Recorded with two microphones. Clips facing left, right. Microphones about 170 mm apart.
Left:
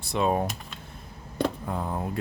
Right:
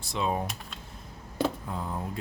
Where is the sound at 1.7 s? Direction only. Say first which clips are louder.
Left 4 dB; 60° left (ahead or behind).